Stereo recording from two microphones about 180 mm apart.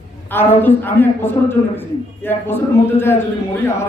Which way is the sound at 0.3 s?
10° left (ahead or behind).